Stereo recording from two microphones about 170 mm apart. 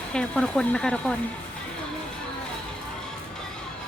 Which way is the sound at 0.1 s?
5° left (ahead or behind).